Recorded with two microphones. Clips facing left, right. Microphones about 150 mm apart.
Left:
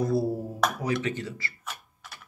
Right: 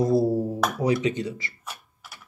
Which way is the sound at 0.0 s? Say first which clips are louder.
Right 5 dB; 30° right (ahead or behind).